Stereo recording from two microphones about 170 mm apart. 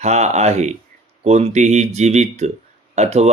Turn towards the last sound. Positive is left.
turn(degrees=-40)  # may be behind; listen again after turning